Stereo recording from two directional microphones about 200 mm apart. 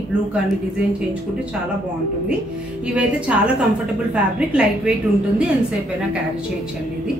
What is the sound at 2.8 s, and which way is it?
A woman's voice, 5° right (ahead or behind).